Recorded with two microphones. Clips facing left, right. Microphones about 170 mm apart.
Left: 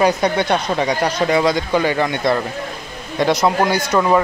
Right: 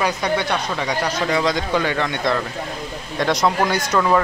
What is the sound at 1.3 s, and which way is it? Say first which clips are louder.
A man's voice: left 3 dB; 5° left (ahead or behind).